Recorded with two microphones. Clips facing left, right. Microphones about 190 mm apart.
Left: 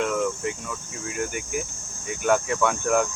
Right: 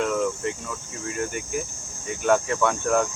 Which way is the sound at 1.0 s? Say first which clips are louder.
Right 1 dB; 5° left (ahead or behind).